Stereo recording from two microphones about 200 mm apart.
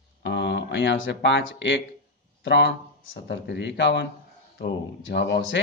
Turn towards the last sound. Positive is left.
turn(degrees=60)  # may be behind; listen again after turning